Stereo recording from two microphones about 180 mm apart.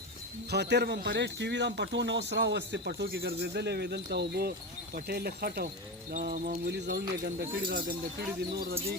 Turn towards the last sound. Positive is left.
turn(degrees=-55)  # may be behind; listen again after turning